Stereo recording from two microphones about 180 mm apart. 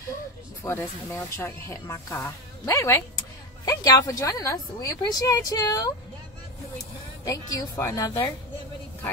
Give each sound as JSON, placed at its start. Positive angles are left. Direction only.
{"t": 0.7, "sound": "a woman's voice", "side_deg": 15}
{"t": 7.2, "sound": "a woman's voice", "side_deg": 20}